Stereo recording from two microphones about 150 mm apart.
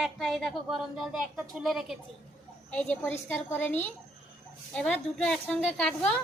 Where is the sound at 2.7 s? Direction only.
10° left (ahead or behind).